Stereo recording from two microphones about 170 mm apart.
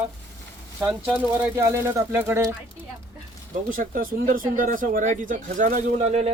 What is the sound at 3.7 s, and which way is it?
Speech, 55° right (ahead or behind).